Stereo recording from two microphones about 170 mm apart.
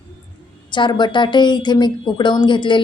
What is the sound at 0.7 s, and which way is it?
A woman's voice, 25° left (ahead or behind).